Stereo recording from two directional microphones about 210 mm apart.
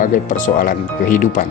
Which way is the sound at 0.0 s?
40° left (ahead or behind).